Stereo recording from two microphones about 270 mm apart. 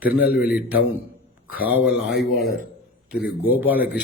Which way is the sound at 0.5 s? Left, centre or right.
Centre.